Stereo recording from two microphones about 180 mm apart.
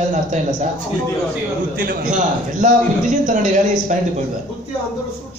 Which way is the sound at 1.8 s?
50° right (ahead or behind).